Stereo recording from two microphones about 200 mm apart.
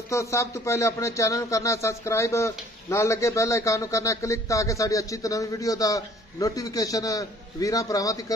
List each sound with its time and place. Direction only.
0.1 s speech: 15° left (ahead or behind)